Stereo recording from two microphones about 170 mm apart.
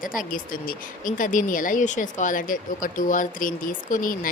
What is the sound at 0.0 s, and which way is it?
Speech, 55° left (ahead or behind).